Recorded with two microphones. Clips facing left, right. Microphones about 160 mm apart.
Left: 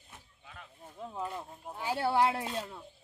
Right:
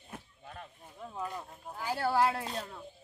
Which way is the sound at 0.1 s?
50° right (ahead or behind).